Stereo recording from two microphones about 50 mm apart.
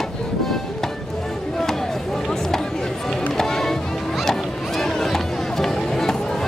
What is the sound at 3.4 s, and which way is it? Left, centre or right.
Music, centre.